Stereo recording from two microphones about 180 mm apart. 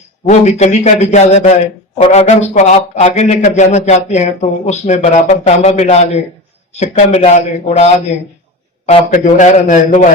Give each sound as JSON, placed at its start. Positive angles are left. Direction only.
{"t": 0.3, "sound": "speech", "side_deg": 40}
{"t": 9.0, "sound": "a man's voice", "side_deg": 45}